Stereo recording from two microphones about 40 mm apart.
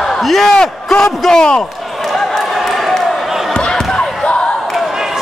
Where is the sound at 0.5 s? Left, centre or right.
Centre.